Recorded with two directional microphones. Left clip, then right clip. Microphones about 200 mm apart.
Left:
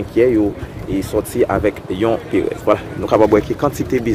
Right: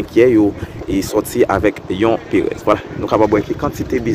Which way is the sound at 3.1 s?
Centre (ahead or behind).